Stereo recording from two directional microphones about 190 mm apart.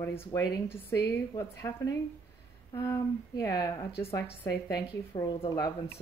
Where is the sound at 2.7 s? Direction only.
15° left (ahead or behind).